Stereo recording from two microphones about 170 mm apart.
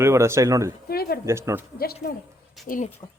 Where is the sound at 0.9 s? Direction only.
65° left (ahead or behind).